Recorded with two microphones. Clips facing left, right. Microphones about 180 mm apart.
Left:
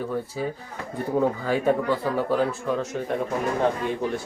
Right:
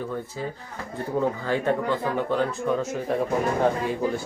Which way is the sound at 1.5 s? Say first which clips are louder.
Left 2 dB; 10° left (ahead or behind).